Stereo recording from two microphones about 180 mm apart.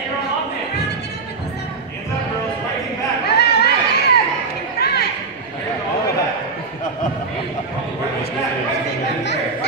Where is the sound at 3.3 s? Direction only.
65° left (ahead or behind).